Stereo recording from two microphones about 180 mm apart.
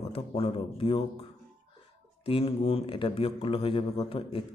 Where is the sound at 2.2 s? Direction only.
30° left (ahead or behind).